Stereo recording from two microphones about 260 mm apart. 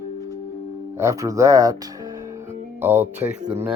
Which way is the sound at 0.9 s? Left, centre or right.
Centre.